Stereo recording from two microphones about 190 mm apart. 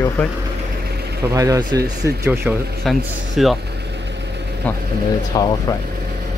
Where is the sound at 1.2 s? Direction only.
15° right (ahead or behind).